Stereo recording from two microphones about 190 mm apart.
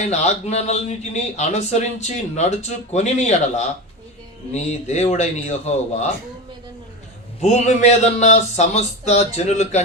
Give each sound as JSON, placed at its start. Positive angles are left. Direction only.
{"t": 0.0, "sound": "speech", "side_deg": 35}
{"t": 4.5, "sound": "speech", "side_deg": 35}
{"t": 7.4, "sound": "speech", "side_deg": 35}